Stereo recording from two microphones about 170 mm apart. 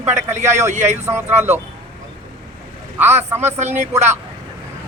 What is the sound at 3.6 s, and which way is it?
Speech, 40° right (ahead or behind).